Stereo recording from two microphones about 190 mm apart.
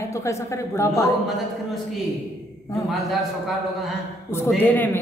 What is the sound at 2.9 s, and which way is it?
Speech, centre (ahead or behind).